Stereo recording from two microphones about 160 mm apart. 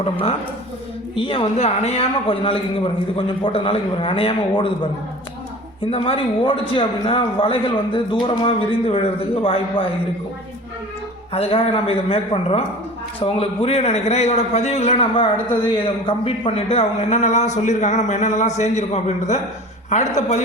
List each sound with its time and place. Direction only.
0.0 s a man's voice: 40° left (ahead or behind)
11.3 s a man's voice: 40° left (ahead or behind)